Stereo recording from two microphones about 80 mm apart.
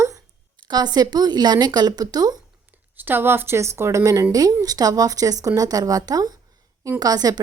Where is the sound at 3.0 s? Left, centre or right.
Right.